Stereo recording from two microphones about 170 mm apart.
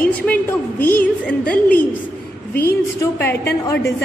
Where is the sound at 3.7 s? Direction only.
15° left (ahead or behind).